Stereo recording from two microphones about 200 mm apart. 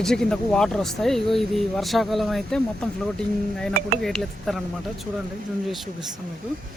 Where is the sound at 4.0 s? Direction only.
Centre (ahead or behind).